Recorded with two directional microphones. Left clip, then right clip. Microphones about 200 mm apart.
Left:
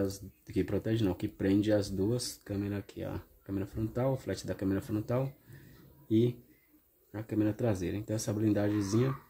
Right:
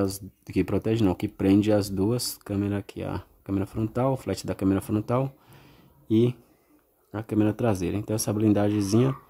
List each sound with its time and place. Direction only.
0.0 s speech: 35° right (ahead or behind)